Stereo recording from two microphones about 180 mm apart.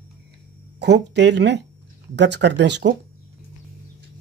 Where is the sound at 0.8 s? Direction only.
70° right (ahead or behind).